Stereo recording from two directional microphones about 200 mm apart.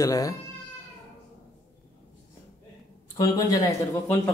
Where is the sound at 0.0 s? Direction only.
15° left (ahead or behind).